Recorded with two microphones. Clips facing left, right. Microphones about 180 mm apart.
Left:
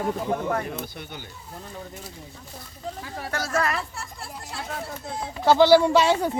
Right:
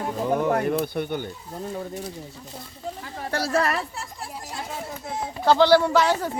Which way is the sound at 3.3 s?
30° right (ahead or behind).